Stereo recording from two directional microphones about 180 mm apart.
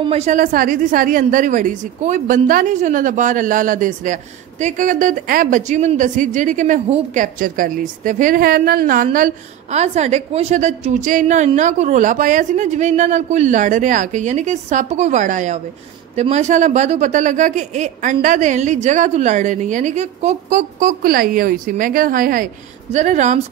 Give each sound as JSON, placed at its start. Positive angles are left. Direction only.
{"t": 0.0, "sound": "a woman's voice", "side_deg": -35}